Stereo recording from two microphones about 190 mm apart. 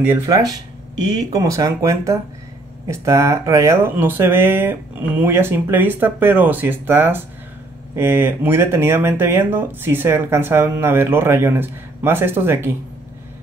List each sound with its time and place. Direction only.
0.1 s speech: 20° right (ahead or behind)